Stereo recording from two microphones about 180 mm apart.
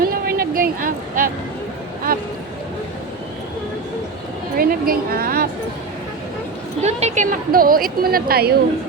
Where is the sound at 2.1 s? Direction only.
55° right (ahead or behind).